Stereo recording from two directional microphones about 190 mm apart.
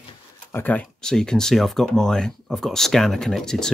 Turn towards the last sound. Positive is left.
turn(degrees=5)  # may be behind; listen again after turning